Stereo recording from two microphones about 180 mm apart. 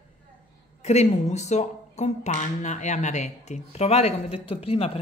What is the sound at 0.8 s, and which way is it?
Speech, 40° left (ahead or behind).